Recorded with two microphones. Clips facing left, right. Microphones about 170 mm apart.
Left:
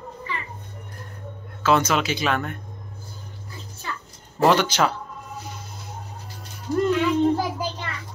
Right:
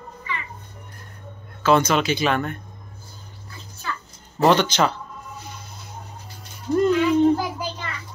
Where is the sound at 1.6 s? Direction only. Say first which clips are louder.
Right 2 dB; 5° left (ahead or behind).